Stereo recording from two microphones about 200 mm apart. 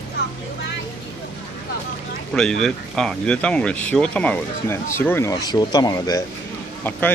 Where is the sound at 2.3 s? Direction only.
5° left (ahead or behind); by 6.2 s 20° left (ahead or behind).